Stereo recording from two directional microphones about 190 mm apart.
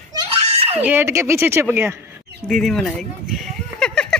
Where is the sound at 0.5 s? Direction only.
30° right (ahead or behind).